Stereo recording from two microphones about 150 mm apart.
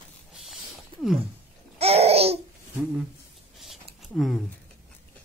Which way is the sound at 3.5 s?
Centre (ahead or behind).